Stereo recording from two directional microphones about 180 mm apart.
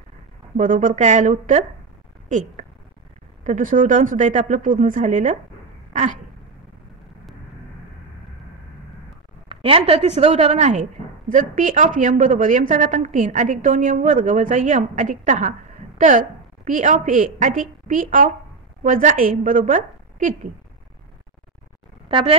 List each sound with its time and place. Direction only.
0.6 s speech: 45° right (ahead or behind)
9.5 s a woman's voice: 30° right (ahead or behind)
22.1 s a woman's voice: 30° right (ahead or behind)